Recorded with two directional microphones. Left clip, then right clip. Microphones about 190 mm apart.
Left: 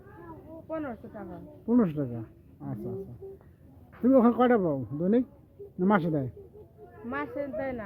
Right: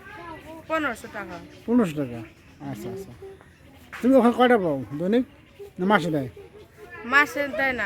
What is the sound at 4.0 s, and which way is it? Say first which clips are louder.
Speech: right 4 dB; 5° right (ahead or behind).